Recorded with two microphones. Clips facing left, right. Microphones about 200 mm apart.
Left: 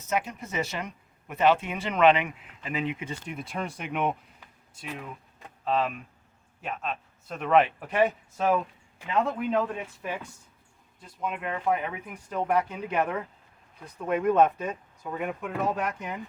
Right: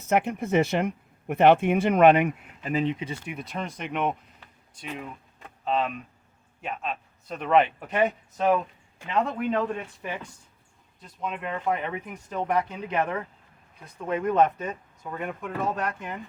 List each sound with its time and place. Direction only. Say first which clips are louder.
0.1 s speech: right 7 dB; 60° right (ahead or behind); by 2.8 s 40° right (ahead or behind)
3.3 s speech: even; 5° left (ahead or behind)